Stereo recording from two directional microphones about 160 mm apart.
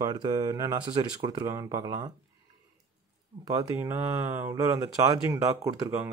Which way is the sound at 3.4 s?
20° right (ahead or behind).